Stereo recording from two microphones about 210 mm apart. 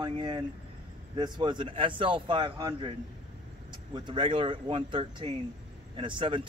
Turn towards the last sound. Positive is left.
turn(degrees=-25)  # may be behind; listen again after turning